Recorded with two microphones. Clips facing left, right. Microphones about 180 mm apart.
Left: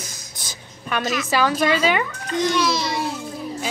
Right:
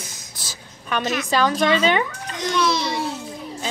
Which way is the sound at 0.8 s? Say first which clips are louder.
Even; 5° left (ahead or behind).